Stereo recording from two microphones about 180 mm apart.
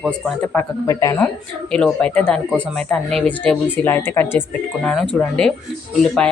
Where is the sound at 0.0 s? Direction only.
5° right (ahead or behind).